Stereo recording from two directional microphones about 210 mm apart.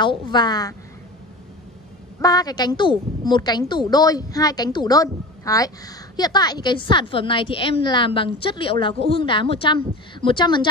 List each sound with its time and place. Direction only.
0.0 s a woman's voice: 20° left (ahead or behind)
2.1 s a woman's voice: 15° left (ahead or behind)